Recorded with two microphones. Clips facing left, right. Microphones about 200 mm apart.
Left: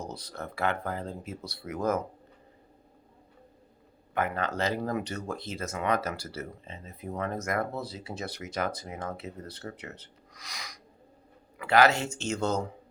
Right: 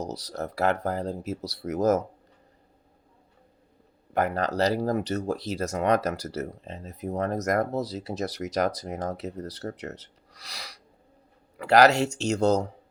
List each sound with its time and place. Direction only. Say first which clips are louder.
0.0 s speech: right 6 dB; 40° right (ahead or behind)
4.1 s speech: right 4 dB; 40° right (ahead or behind)